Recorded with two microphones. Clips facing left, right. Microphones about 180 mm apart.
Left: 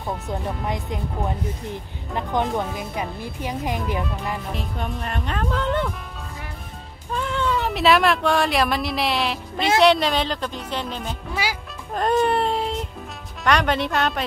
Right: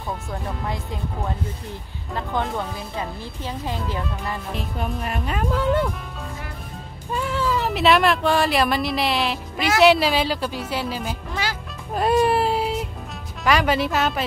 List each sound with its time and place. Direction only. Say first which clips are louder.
0.3 s speech: left 3 dB; 20° left (ahead or behind)
4.0 s speech: left 1 dB; centre (ahead or behind)
7.1 s speech: even; 5° right (ahead or behind)
11.4 s speech: left 1 dB; 10° left (ahead or behind)
11.9 s music: right 1 dB; 5° right (ahead or behind)
13.4 s speech: right 1 dB; 5° right (ahead or behind)